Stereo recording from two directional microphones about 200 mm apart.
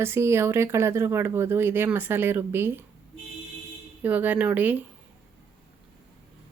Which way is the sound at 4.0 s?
10° right (ahead or behind).